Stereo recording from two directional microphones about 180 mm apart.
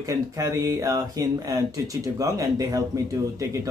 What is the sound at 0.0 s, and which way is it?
Speech, 20° right (ahead or behind).